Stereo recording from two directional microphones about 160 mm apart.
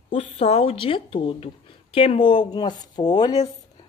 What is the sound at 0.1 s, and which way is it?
Speech, 40° left (ahead or behind).